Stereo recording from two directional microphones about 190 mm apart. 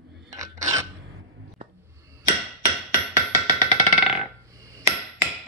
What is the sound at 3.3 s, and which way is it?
Music, 20° right (ahead or behind).